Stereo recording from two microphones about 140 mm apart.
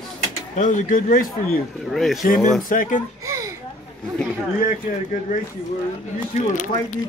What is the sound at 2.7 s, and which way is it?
Speech, 75° left (ahead or behind).